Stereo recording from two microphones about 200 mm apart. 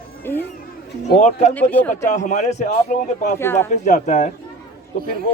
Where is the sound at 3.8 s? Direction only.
35° left (ahead or behind).